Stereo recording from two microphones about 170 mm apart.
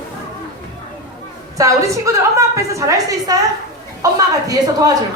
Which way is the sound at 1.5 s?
20° right (ahead or behind).